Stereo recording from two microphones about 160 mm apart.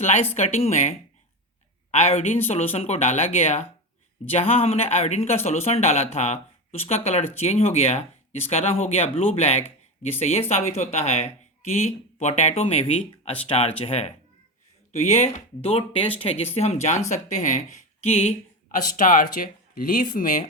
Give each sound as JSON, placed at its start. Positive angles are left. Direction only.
{"t": 0.0, "sound": "speech", "side_deg": 45}
{"t": 18.9, "sound": "speech", "side_deg": 55}